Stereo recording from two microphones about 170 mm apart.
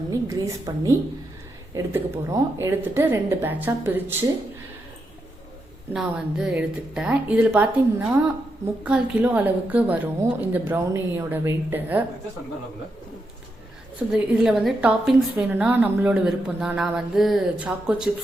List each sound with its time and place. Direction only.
0.1 s a woman's voice: 20° right (ahead or behind)
5.9 s a woman's voice: 5° right (ahead or behind)
14.1 s a woman's voice: centre (ahead or behind)